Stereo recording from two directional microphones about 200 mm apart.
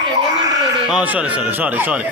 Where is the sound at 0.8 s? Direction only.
5° right (ahead or behind).